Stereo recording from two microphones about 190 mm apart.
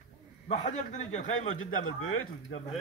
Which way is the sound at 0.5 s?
35° left (ahead or behind).